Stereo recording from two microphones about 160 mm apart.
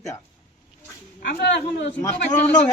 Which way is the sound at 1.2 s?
70° left (ahead or behind).